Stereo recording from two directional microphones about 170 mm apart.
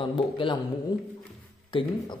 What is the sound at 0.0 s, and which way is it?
Speech, 30° left (ahead or behind).